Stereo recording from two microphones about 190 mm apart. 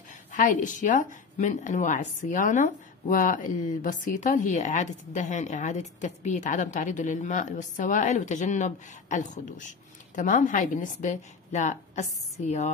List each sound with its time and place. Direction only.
0.3 s a woman's voice: 45° left (ahead or behind)